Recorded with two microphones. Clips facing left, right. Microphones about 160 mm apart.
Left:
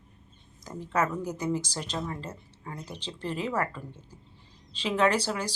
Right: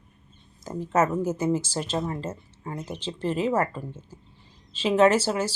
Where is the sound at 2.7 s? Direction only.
10° right (ahead or behind).